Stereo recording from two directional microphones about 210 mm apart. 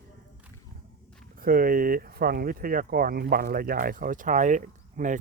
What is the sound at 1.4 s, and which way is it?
Speech, 45° right (ahead or behind).